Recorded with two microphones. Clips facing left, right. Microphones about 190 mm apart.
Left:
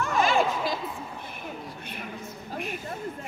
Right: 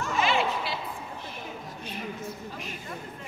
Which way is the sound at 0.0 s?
50° left (ahead or behind).